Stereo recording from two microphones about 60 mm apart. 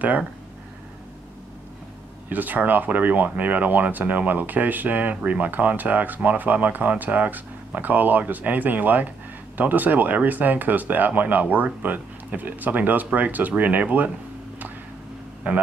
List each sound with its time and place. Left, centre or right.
2.2 s speech: right
15.5 s a man's voice: right